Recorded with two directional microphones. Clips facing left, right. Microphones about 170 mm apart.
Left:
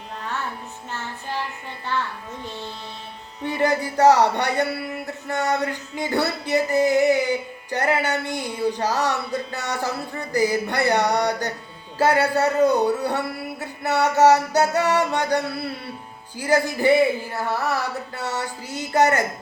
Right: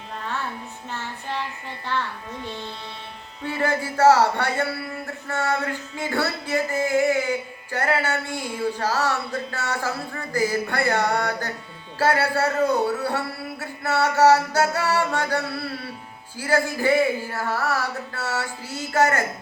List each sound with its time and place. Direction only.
3.4 s music: 15° left (ahead or behind)
3.9 s speech: 15° left (ahead or behind)
16.4 s speech: 15° left (ahead or behind)